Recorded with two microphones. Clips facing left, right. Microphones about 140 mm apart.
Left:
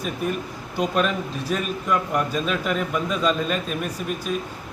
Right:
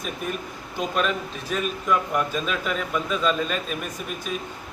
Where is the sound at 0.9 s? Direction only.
Centre (ahead or behind).